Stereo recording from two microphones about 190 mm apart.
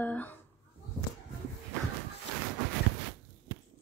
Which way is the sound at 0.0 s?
10° left (ahead or behind).